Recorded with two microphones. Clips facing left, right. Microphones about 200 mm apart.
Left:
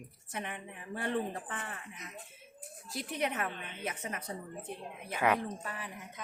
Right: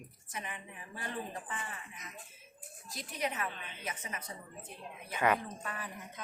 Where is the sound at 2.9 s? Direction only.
60° left (ahead or behind).